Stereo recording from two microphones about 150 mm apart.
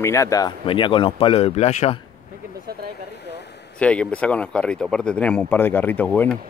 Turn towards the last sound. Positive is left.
turn(degrees=10)  # may be behind; listen again after turning